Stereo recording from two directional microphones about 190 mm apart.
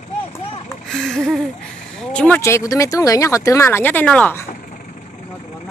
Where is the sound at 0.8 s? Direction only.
5° left (ahead or behind).